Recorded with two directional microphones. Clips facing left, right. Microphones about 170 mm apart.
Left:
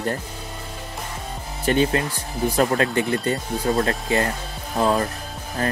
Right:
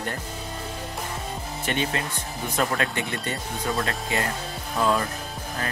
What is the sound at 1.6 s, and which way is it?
Speech, 35° left (ahead or behind).